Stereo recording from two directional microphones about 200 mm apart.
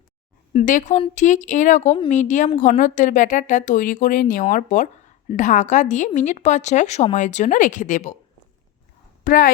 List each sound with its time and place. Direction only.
0.5 s speech: 40° left (ahead or behind)
9.2 s speech: 45° left (ahead or behind)